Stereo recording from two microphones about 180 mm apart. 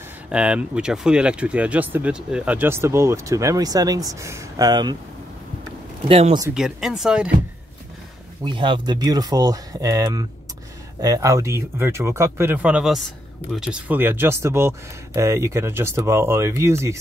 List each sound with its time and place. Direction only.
0.3 s speech: 5° right (ahead or behind); by 4.9 s 20° right (ahead or behind)
6.0 s speech: 30° right (ahead or behind)
6.5 s speech: 5° right (ahead or behind)
8.5 s speech: 25° right (ahead or behind)